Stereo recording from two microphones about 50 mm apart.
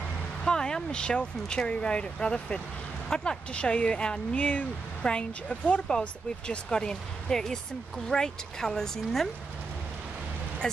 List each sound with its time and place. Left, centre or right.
0.5 s speech: centre
10.6 s speech: centre